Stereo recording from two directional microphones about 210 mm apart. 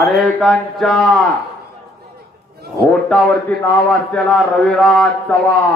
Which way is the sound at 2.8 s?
5° left (ahead or behind).